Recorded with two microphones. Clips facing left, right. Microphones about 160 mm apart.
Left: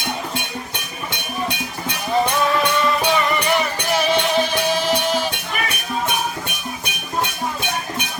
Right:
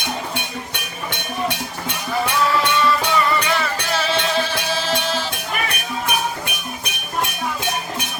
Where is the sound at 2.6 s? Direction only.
20° left (ahead or behind).